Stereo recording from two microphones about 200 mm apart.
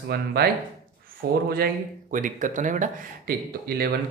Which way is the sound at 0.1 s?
50° right (ahead or behind).